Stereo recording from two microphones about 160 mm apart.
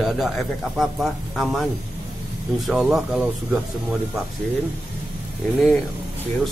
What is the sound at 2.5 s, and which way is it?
Speech, centre (ahead or behind).